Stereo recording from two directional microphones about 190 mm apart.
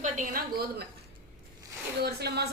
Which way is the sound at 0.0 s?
45° right (ahead or behind).